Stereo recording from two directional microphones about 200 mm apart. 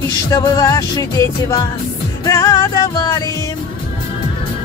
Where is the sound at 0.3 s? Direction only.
15° left (ahead or behind).